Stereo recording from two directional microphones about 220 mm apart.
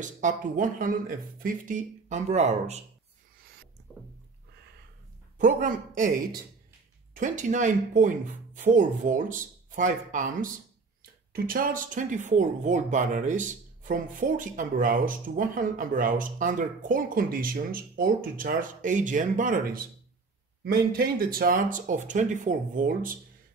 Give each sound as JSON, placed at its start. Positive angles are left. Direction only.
{"t": 0.0, "sound": "speech", "side_deg": -35}
{"t": 3.9, "sound": "a sound", "side_deg": -5}
{"t": 5.4, "sound": "speech", "side_deg": -35}